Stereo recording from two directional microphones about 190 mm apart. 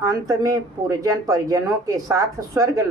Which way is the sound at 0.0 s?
15° right (ahead or behind).